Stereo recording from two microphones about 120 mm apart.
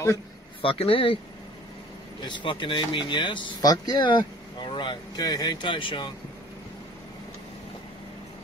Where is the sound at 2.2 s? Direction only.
40° left (ahead or behind).